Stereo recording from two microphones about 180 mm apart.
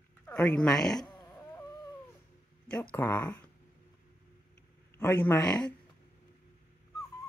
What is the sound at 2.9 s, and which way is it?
Speech, 10° left (ahead or behind).